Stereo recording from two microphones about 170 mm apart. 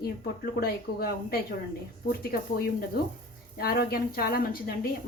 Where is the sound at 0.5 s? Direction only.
65° left (ahead or behind).